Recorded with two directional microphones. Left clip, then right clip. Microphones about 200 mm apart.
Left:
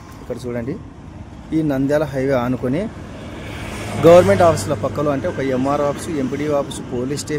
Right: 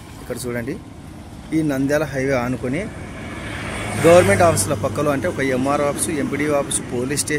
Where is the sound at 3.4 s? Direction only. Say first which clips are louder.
Right 3 dB; 45° left (ahead or behind).